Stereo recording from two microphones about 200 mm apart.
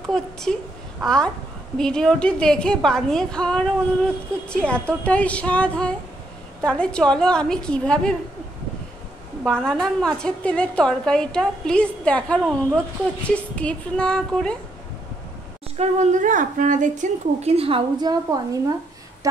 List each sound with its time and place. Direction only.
0.1 s a woman's voice: 5° left (ahead or behind)
9.4 s a woman's voice: 5° left (ahead or behind)
15.8 s a woman's voice: 35° right (ahead or behind)